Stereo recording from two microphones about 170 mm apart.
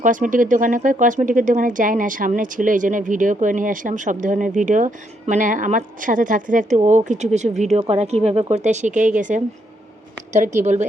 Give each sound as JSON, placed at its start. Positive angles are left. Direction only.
{"t": 0.0, "sound": "speech", "side_deg": -50}